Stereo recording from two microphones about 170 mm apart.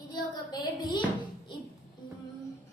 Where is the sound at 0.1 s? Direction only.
25° left (ahead or behind).